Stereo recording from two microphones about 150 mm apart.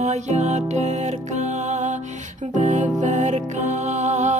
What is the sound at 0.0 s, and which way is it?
Music, 50° right (ahead or behind).